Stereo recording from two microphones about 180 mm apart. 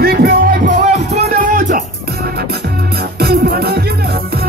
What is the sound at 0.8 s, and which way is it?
Music, 40° right (ahead or behind).